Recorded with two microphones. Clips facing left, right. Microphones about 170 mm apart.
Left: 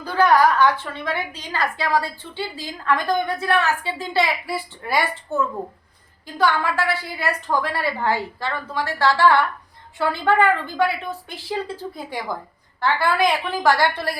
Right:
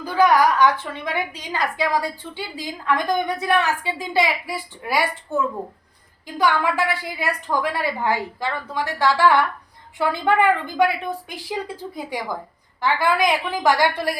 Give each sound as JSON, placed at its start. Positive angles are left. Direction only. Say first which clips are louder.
{"t": 0.0, "sound": "a woman's voice", "louder": "even", "side_deg": -10}
{"t": 6.4, "sound": "a woman's voice", "louder": "even", "side_deg": -15}
{"t": 12.8, "sound": "a woman's voice", "louder": "even", "side_deg": -15}